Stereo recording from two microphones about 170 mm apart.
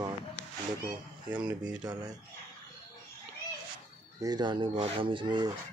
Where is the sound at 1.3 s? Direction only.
10° right (ahead or behind).